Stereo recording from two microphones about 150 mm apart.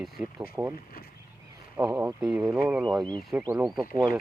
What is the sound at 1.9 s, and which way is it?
Speech, 15° right (ahead or behind).